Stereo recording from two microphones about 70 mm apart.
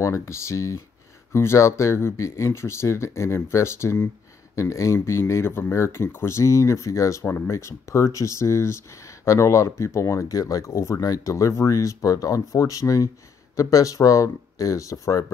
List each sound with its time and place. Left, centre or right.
0.0 s speech: left